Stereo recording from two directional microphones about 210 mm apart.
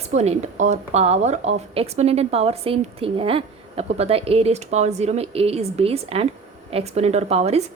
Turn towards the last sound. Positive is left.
turn(degrees=-30)  # may be behind; listen again after turning